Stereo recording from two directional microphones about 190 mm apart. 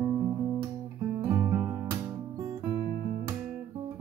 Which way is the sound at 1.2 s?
20° right (ahead or behind).